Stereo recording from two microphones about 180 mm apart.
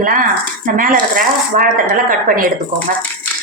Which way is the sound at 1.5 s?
45° right (ahead or behind).